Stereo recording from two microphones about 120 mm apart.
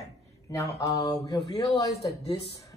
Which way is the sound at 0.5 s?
30° left (ahead or behind).